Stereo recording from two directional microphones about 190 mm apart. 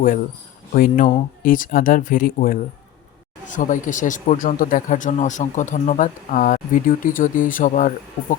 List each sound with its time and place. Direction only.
0.7 s speech: 45° left (ahead or behind)